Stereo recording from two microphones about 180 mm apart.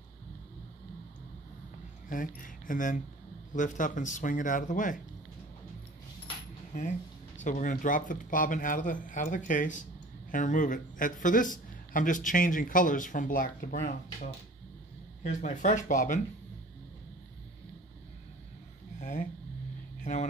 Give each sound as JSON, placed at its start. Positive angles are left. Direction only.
{"t": 2.0, "sound": "a man's voice", "side_deg": 50}
{"t": 7.3, "sound": "a man's voice", "side_deg": 45}
{"t": 18.9, "sound": "a sound", "side_deg": 45}